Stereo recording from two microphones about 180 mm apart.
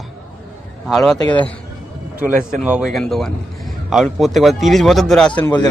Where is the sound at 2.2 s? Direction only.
5° right (ahead or behind).